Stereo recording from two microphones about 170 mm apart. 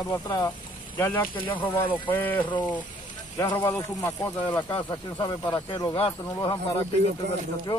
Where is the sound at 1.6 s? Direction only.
30° left (ahead or behind).